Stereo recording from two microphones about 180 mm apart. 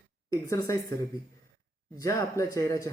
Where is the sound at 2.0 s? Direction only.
15° left (ahead or behind).